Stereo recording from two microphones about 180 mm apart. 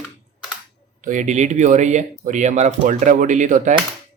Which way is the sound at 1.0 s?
45° right (ahead or behind).